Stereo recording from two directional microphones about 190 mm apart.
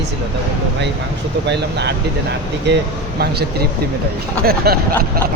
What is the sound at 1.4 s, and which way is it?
Speech, 65° right (ahead or behind).